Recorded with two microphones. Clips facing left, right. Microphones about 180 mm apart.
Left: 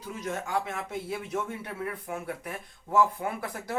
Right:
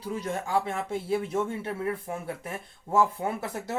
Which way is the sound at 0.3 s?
30° right (ahead or behind).